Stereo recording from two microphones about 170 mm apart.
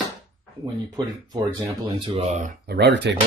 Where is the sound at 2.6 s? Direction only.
75° right (ahead or behind); by 3.2 s 90° right.